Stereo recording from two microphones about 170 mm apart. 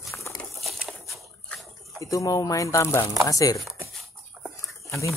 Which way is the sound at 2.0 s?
20° left (ahead or behind).